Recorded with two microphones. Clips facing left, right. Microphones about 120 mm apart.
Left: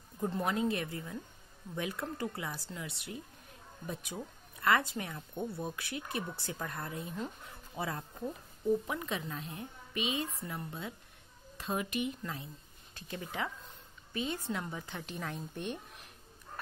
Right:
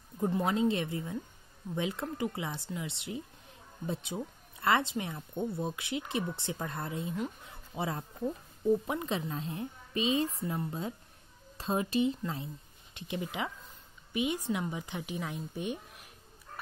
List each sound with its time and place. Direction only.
0.2 s a woman's voice: 20° right (ahead or behind)
12.9 s a woman's voice: 15° right (ahead or behind)